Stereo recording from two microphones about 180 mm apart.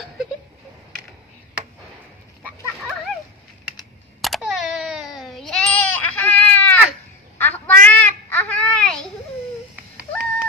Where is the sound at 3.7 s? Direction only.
Centre (ahead or behind).